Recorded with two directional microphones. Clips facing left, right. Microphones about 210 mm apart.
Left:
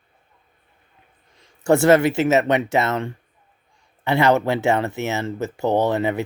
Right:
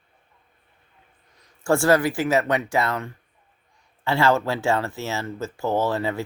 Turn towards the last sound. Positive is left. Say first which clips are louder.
# left 4 dB
turn(degrees=20)  # may be behind; listen again after turning